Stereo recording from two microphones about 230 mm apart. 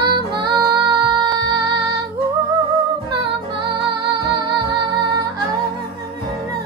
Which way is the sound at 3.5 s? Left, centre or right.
Right.